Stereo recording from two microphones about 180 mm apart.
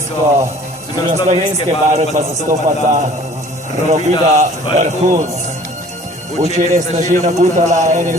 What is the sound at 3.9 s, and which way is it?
A man's voice, 40° right (ahead or behind).